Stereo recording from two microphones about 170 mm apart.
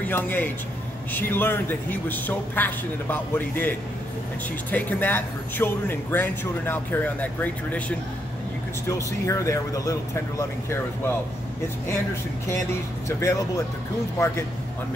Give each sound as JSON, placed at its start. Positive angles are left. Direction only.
{"t": 0.1, "sound": "speech", "side_deg": 10}
{"t": 8.8, "sound": "speech", "side_deg": 20}
{"t": 13.2, "sound": "speech", "side_deg": 15}